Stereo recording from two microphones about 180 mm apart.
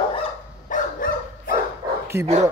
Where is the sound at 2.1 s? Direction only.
15° right (ahead or behind).